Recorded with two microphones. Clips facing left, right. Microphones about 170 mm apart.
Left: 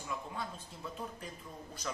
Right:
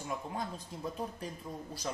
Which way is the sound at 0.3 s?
40° right (ahead or behind).